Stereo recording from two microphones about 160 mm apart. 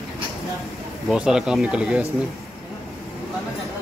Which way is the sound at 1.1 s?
5° right (ahead or behind).